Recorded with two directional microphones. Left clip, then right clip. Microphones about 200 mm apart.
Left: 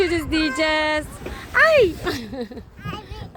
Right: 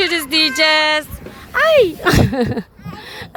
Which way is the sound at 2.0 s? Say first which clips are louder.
Right 12 dB; 40° right (ahead or behind).